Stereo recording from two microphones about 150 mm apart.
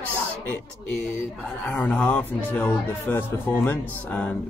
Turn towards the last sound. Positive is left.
turn(degrees=10)  # may be behind; listen again after turning